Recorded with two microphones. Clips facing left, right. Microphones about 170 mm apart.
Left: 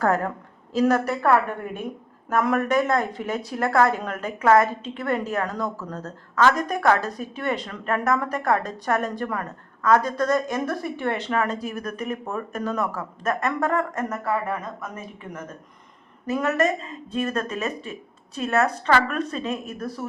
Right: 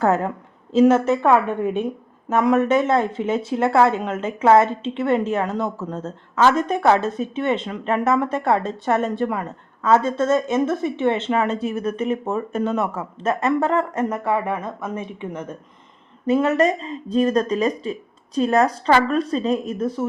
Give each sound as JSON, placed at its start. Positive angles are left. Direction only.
{"t": 0.0, "sound": "a woman's voice", "side_deg": -20}